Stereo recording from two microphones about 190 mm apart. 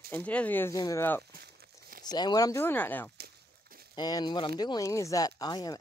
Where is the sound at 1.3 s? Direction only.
55° right (ahead or behind).